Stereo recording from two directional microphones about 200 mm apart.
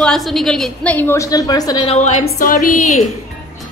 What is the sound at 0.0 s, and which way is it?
A woman's voice, centre (ahead or behind).